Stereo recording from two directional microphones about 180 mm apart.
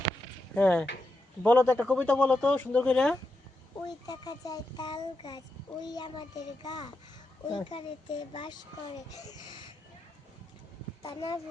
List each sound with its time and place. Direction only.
0.5 s speech: 10° left (ahead or behind)
3.8 s a child's voice: 20° left (ahead or behind)